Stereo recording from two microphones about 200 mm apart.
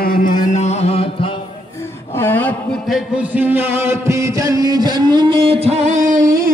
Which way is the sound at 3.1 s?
5° right (ahead or behind).